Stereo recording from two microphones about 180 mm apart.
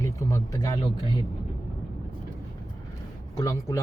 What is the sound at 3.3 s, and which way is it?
Speech, 15° left (ahead or behind).